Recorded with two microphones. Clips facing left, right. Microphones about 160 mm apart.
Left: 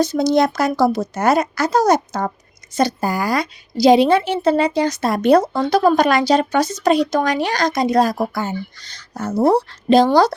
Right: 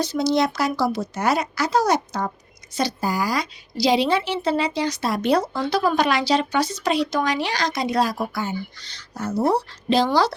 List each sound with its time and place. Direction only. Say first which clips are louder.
0.0 s a woman's voice: left 5 dB; 50° left (ahead or behind)